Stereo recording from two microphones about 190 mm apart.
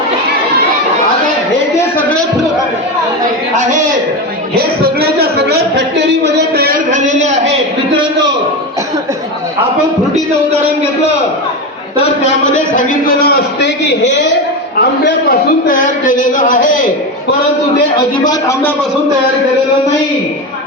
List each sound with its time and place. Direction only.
4.5 s speech: 55° right (ahead or behind)
12.2 s a man's voice: 40° left (ahead or behind)
13.2 s a man's voice: 60° left (ahead or behind)
14.8 s a man's voice: 55° left (ahead or behind)
18.3 s a man's voice: 15° left (ahead or behind)